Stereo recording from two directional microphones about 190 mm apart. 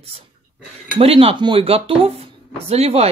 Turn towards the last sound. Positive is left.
turn(degrees=-35)  # may be behind; listen again after turning